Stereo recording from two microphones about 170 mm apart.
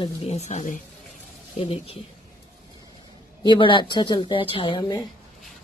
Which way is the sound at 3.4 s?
30° left (ahead or behind).